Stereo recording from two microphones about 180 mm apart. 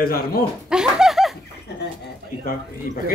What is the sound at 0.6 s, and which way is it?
Laughter, 5° right (ahead or behind).